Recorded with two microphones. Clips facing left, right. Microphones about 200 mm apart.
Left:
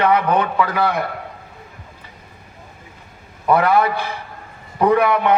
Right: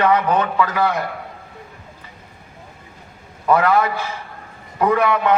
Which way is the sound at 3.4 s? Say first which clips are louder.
Left 1 dB; 15° left (ahead or behind).